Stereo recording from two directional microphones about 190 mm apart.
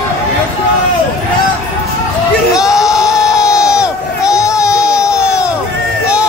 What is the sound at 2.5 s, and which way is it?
Crowd, 5° right (ahead or behind).